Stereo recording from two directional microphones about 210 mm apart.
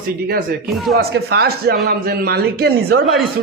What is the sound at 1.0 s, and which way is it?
Speech, 50° right (ahead or behind).